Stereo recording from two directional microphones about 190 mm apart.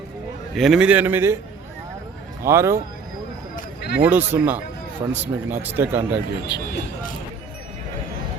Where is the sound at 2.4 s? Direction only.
15° right (ahead or behind).